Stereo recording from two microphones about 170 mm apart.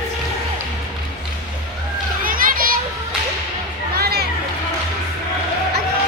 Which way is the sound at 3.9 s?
65° right (ahead or behind).